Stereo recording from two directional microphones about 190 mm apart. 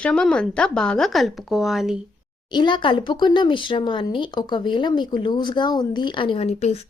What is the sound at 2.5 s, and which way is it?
Speech, 25° left (ahead or behind).